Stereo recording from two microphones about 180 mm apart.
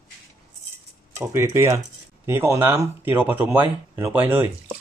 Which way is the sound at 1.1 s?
15° right (ahead or behind).